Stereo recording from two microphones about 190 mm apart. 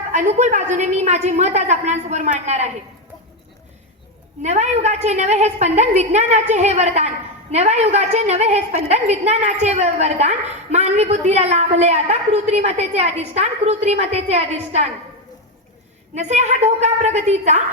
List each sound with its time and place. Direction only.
0.1 s a woman's voice: 40° right (ahead or behind)
4.4 s a woman's voice: 35° right (ahead or behind)
16.1 s a woman's voice: 35° right (ahead or behind)